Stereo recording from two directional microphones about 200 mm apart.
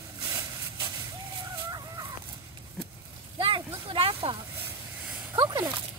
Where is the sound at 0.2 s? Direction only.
20° right (ahead or behind).